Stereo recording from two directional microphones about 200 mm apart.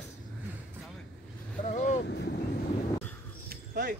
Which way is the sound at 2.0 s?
55° left (ahead or behind).